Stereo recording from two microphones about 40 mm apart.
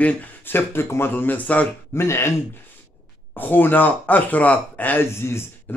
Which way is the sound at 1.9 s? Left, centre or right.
Left.